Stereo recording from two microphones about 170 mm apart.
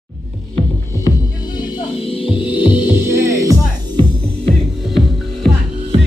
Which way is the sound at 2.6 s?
10° right (ahead or behind).